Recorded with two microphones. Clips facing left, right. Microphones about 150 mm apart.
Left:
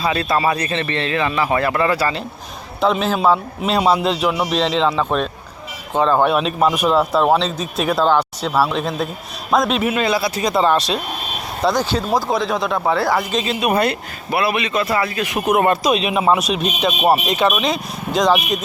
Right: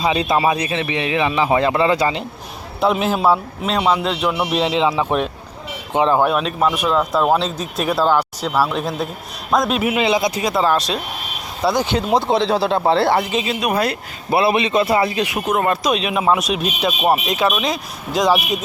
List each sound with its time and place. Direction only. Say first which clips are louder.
0.0 s speech: right 1 dB; 15° right (ahead or behind)
3.2 s a man's voice: even; centre (ahead or behind)
6.2 s a man's voice: left 1 dB; centre (ahead or behind)
10.0 s speech: right 1 dB; 20° right (ahead or behind)
10.4 s a man's voice: left 1 dB; centre (ahead or behind)
11.7 s speech: right 3 dB; 15° right (ahead or behind)
13.3 s a man's voice: left 1 dB; 5° right (ahead or behind)
14.3 s speech: right 3 dB; 25° right (ahead or behind)
15.4 s a man's voice: left 4 dB; 5° left (ahead or behind)